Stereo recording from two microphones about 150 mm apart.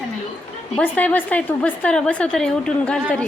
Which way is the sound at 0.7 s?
10° left (ahead or behind).